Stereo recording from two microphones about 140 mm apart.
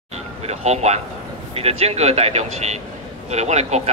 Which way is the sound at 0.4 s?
50° right (ahead or behind).